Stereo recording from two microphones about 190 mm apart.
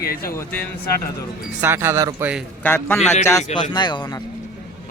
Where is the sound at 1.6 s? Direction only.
10° right (ahead or behind).